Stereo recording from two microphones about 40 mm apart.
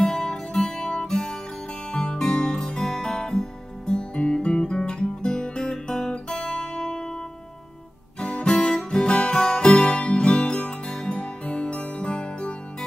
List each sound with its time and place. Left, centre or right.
0.0 s music: centre
8.5 s music: centre